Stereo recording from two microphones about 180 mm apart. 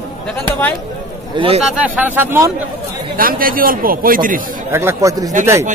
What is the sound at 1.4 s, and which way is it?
Speech, 25° right (ahead or behind).